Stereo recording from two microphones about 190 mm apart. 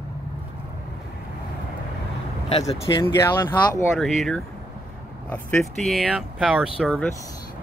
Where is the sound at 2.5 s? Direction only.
20° left (ahead or behind).